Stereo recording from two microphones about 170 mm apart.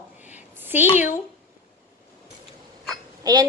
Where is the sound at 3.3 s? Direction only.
25° right (ahead or behind).